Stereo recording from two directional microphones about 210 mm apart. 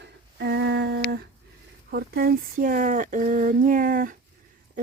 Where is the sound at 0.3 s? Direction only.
55° right (ahead or behind).